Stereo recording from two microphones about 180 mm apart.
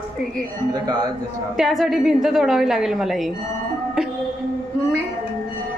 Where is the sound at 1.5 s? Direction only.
Centre (ahead or behind).